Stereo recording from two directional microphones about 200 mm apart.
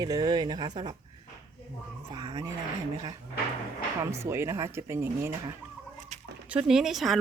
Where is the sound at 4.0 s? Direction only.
15° right (ahead or behind).